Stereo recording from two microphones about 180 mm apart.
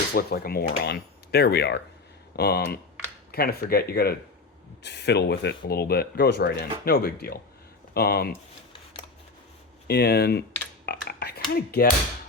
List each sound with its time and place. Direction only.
0.1 s speech: 60° left (ahead or behind)
9.8 s speech: 65° left (ahead or behind)
10.8 s a sound: 65° left (ahead or behind)
11.5 s speech: 55° left (ahead or behind)